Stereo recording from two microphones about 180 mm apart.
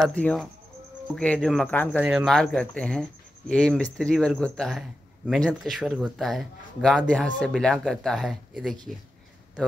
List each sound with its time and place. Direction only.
0.0 s speech: 5° left (ahead or behind)
2.0 s speech: 5° right (ahead or behind)